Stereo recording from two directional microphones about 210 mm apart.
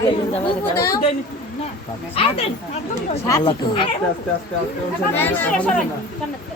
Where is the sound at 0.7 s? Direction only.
15° left (ahead or behind).